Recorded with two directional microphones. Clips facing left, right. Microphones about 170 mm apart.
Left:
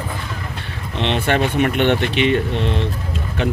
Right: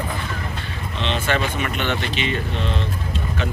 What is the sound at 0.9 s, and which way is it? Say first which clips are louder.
Speech: left 4 dB; 60° left (ahead or behind).